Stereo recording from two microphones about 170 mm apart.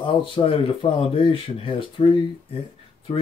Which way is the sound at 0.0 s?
30° left (ahead or behind).